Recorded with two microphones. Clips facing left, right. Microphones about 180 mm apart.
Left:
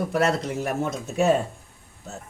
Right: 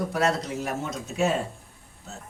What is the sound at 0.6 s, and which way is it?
Speech, 55° left (ahead or behind).